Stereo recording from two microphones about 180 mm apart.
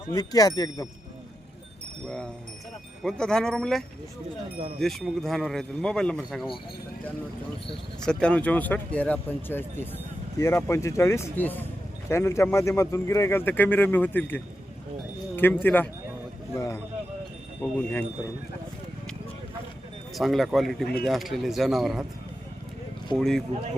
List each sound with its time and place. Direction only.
0.1 s speech: 20° left (ahead or behind)
2.0 s a man's voice: 5° left (ahead or behind)
8.0 s speech: 5° left (ahead or behind)
15.6 s speech: 10° left (ahead or behind)
16.6 s a sound: 15° left (ahead or behind)
17.6 s speech: 10° left (ahead or behind)
20.1 s a man's voice: centre (ahead or behind)
23.1 s a man's voice: centre (ahead or behind)